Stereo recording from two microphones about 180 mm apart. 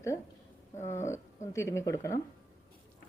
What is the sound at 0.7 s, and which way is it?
Speech, 40° left (ahead or behind).